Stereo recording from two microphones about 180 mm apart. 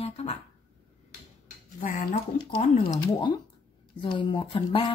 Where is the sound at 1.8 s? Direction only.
50° left (ahead or behind).